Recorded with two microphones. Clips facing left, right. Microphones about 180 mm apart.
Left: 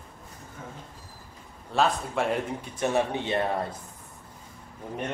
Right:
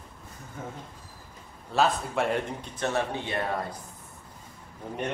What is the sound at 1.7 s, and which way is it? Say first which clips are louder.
Speech: even; centre (ahead or behind).